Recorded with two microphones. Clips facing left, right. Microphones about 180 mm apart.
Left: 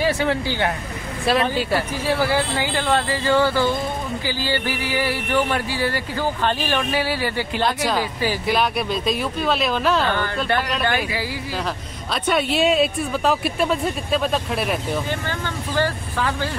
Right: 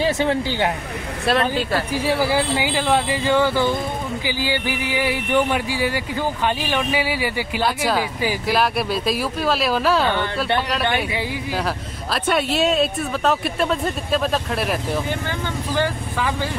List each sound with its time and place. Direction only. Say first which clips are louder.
0.0 s speech: right 1 dB; 20° right (ahead or behind)
1.2 s speech: even; 5° left (ahead or behind)
1.9 s speech: right 1 dB; 10° right (ahead or behind)
10.7 s speech: right 1 dB; centre (ahead or behind)
15.0 s speech: right 1 dB; 15° right (ahead or behind)